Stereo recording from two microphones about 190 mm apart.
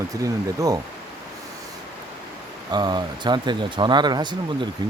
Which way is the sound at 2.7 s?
20° right (ahead or behind).